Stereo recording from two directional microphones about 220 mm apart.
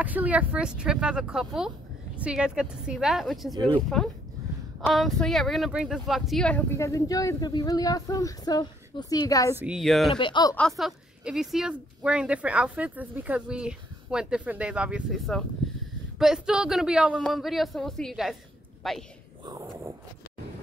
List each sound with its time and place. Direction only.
0.0 s a woman's voice: 5° right (ahead or behind)
3.5 s speech: 20° right (ahead or behind)
4.8 s speech: centre (ahead or behind)
9.6 s a woman's voice: centre (ahead or behind)
10.1 s speech: 20° left (ahead or behind)
10.5 s a woman's voice: centre (ahead or behind)
19.4 s a sound: 15° right (ahead or behind)